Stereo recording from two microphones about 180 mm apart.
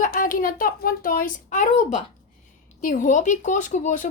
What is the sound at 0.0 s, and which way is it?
Speech, 50° left (ahead or behind).